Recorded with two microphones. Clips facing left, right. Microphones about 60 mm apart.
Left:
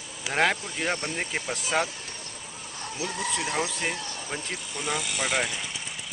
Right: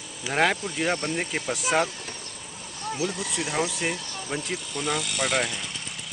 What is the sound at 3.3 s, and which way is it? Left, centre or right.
Speech, centre.